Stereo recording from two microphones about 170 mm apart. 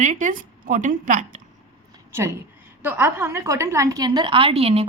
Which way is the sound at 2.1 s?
15° right (ahead or behind).